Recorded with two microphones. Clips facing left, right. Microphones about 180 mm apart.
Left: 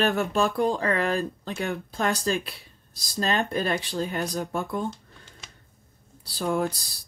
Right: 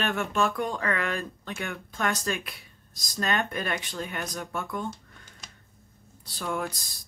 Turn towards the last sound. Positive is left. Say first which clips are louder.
# left 6 dB
turn(degrees=35)  # may be behind; listen again after turning